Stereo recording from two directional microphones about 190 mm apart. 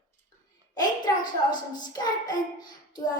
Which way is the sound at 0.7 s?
20° left (ahead or behind).